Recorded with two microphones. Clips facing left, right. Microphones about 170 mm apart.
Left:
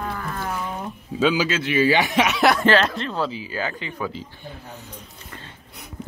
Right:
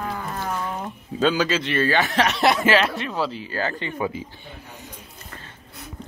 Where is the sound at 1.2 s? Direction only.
5° left (ahead or behind).